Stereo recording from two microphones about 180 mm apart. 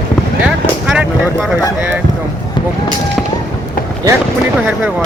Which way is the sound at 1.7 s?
10° right (ahead or behind).